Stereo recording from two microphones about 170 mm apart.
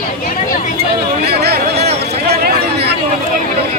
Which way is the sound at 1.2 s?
70° right (ahead or behind).